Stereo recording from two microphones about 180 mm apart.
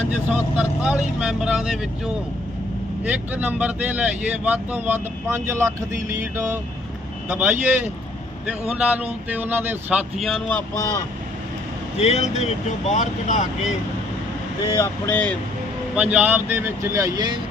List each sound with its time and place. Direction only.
0.3 s speech: 5° right (ahead or behind)
3.0 s speech: 10° right (ahead or behind)
10.2 s speech: centre (ahead or behind)
11.9 s speech: 35° left (ahead or behind)
14.8 s speech: 10° left (ahead or behind)
16.0 s speech: 5° right (ahead or behind)